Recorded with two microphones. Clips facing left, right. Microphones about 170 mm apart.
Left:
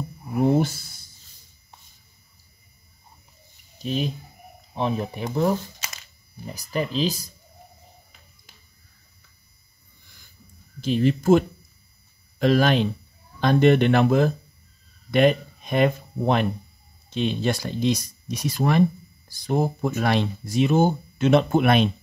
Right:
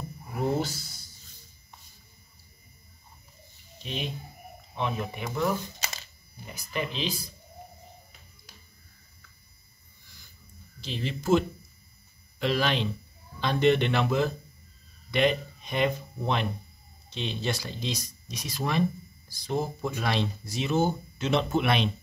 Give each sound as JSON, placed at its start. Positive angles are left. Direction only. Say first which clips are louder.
{"t": 0.6, "sound": "a sound", "louder": "left 7 dB", "side_deg": 55}
{"t": 3.8, "sound": "speech", "louder": "left 8 dB", "side_deg": 40}
{"t": 10.8, "sound": "speech", "louder": "left 13 dB", "side_deg": 50}